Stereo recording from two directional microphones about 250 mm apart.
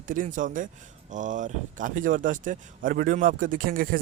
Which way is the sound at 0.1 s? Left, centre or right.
Right.